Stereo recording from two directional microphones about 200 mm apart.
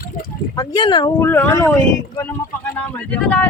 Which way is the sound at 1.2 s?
10° left (ahead or behind).